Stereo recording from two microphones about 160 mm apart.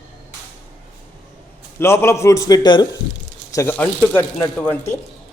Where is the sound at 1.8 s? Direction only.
15° left (ahead or behind).